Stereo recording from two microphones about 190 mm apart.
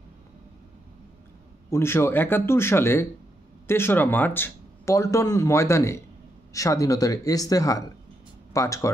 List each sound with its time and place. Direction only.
1.7 s speech: 15° left (ahead or behind)